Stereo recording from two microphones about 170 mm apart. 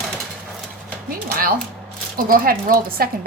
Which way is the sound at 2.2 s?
55° right (ahead or behind).